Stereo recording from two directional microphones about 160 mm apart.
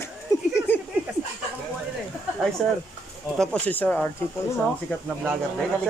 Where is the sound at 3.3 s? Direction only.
5° left (ahead or behind).